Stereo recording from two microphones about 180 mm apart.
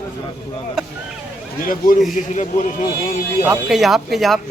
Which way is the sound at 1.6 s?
50° left (ahead or behind).